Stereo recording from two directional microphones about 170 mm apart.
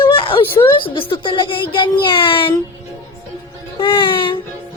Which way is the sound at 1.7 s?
30° left (ahead or behind).